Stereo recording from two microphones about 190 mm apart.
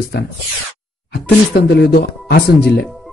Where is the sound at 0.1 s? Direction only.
60° left (ahead or behind).